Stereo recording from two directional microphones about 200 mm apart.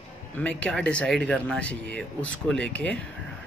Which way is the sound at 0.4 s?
5° left (ahead or behind).